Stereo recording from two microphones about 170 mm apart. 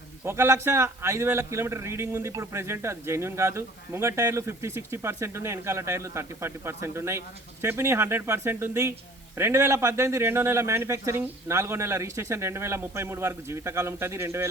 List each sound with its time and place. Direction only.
0.3 s a man's voice: 15° right (ahead or behind)